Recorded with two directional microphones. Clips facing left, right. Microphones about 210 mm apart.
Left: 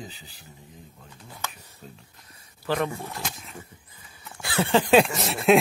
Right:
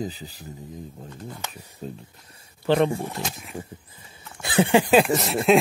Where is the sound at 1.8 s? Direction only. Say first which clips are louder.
Right 11 dB; 35° right (ahead or behind).